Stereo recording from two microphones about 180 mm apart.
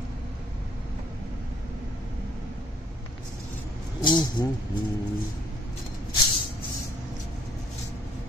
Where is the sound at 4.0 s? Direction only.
25° left (ahead or behind).